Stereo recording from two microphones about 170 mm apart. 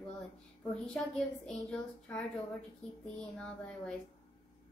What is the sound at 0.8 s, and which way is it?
A woman's voice, 5° left (ahead or behind).